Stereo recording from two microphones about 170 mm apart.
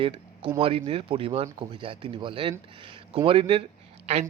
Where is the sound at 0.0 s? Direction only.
30° right (ahead or behind).